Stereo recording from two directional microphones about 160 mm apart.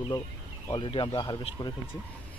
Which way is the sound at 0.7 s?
30° left (ahead or behind).